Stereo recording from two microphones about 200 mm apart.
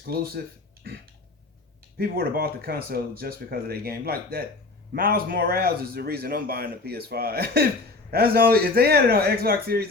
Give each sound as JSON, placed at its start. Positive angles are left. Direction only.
{"t": 0.1, "sound": "speech", "side_deg": -50}
{"t": 2.0, "sound": "speech", "side_deg": -50}